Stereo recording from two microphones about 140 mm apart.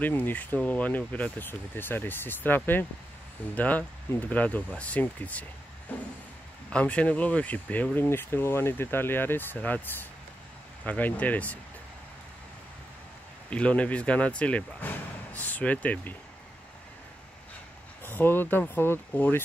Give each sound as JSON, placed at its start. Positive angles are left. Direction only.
{"t": 0.0, "sound": "speech", "side_deg": 15}
{"t": 10.9, "sound": "speech", "side_deg": 10}
{"t": 13.5, "sound": "speech", "side_deg": 10}
{"t": 18.0, "sound": "speech", "side_deg": 15}